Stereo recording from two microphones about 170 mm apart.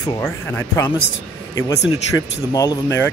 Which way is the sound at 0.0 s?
15° left (ahead or behind).